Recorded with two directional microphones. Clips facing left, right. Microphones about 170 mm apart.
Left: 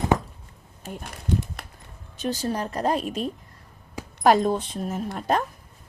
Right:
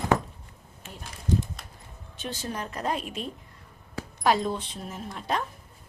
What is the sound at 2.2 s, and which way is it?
A woman's voice, 40° left (ahead or behind).